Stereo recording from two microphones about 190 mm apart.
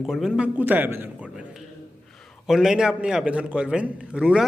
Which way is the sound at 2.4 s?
Centre (ahead or behind).